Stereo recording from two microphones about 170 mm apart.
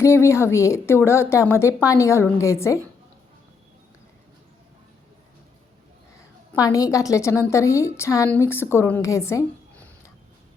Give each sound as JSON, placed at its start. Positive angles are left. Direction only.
{"t": 0.0, "sound": "a woman's voice", "side_deg": 15}
{"t": 6.6, "sound": "a woman's voice", "side_deg": 20}